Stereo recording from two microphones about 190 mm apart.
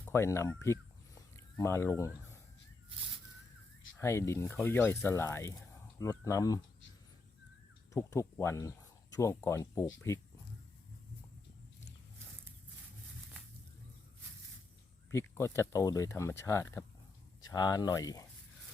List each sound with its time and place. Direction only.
0.0 s a sound: 15° left (ahead or behind)
3.9 s speech: 15° left (ahead or behind)
7.9 s speech: 15° left (ahead or behind)
15.1 s speech: 15° left (ahead or behind)